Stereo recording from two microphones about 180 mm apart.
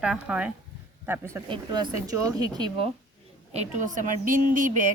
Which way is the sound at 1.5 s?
25° right (ahead or behind).